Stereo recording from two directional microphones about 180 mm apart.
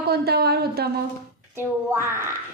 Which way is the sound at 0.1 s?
60° right (ahead or behind).